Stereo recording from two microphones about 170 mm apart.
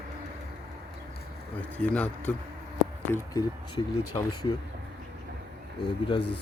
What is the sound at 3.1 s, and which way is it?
Speech, 20° left (ahead or behind).